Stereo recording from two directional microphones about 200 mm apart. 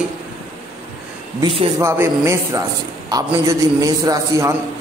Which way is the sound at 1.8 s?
15° right (ahead or behind).